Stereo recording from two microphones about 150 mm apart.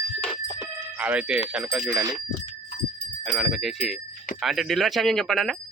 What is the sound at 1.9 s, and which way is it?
Speech, 25° right (ahead or behind).